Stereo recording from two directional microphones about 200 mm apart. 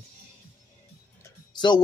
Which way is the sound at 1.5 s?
20° left (ahead or behind).